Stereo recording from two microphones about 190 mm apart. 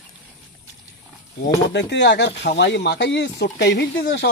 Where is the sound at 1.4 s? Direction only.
65° left (ahead or behind).